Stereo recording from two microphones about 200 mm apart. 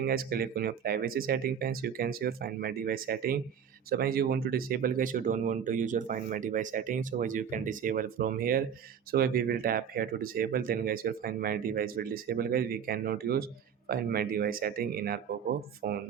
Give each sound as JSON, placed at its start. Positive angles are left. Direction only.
{"t": 0.0, "sound": "speech", "side_deg": -50}